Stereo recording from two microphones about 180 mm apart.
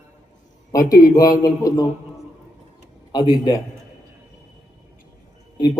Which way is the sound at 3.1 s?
25° left (ahead or behind).